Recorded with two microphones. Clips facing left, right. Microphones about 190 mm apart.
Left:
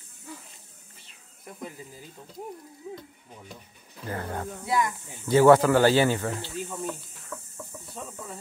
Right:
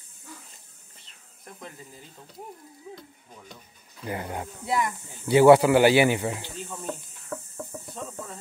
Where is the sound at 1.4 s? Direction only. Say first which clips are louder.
Left 4 dB; 10° left (ahead or behind).